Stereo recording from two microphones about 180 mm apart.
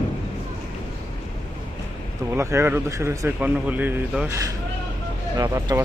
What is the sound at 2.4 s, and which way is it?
Speech, 15° right (ahead or behind).